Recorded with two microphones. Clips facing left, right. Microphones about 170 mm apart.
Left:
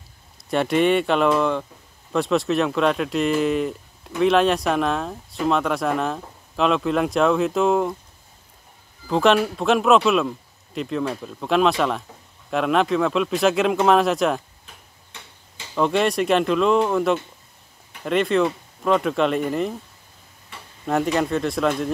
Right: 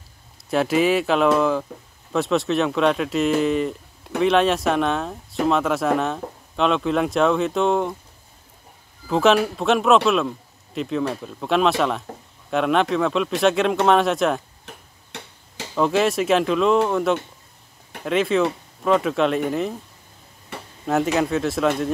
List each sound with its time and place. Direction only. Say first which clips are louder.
0.5 s speech: even; centre (ahead or behind)
9.0 s speech: even; centre (ahead or behind)
15.7 s speech: right 1 dB; centre (ahead or behind)
20.8 s speech: right 1 dB; centre (ahead or behind)